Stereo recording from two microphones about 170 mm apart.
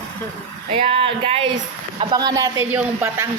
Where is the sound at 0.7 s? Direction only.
30° right (ahead or behind); by 3.3 s 15° right (ahead or behind).